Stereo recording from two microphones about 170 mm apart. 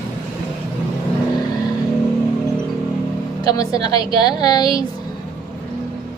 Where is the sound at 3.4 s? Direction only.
20° left (ahead or behind).